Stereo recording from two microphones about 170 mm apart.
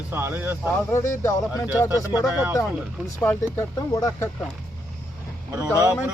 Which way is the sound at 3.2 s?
10° left (ahead or behind).